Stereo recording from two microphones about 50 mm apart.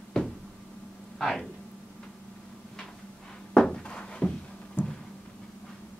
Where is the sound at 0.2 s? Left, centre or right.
Centre.